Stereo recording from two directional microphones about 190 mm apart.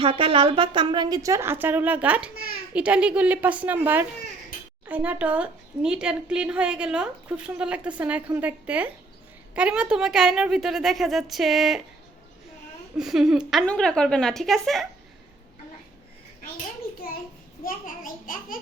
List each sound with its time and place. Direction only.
0.0 s a woman's voice: 25° right (ahead or behind); by 11.8 s centre (ahead or behind)
13.0 s a woman's voice: 5° right (ahead or behind)
17.6 s a child's voice: 45° left (ahead or behind)